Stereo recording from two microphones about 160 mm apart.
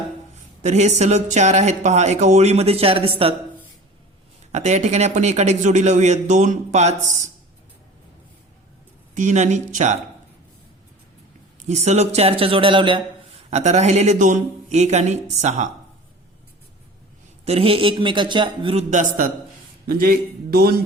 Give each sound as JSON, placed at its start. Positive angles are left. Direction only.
{"t": 0.3, "sound": "speech", "side_deg": -45}
{"t": 4.5, "sound": "speech", "side_deg": -45}
{"t": 9.1, "sound": "speech", "side_deg": -45}
{"t": 11.7, "sound": "a man's voice", "side_deg": -45}
{"t": 13.5, "sound": "speech", "side_deg": -45}
{"t": 17.4, "sound": "a man's voice", "side_deg": -40}
{"t": 20.0, "sound": "a man's voice", "side_deg": -70}